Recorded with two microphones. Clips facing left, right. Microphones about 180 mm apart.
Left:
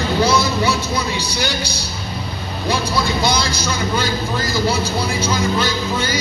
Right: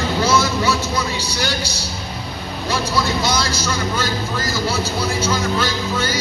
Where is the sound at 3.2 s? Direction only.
15° left (ahead or behind).